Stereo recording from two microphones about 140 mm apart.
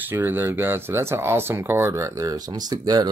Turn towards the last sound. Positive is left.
turn(degrees=-30)  # may be behind; listen again after turning